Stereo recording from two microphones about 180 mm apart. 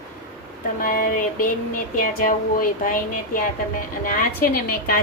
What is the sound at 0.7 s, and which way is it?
A woman's voice, 50° left (ahead or behind).